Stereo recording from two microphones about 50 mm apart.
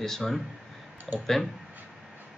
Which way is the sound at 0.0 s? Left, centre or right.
Centre.